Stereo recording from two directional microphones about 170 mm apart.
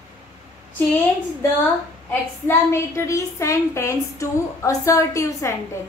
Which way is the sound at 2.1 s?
15° left (ahead or behind).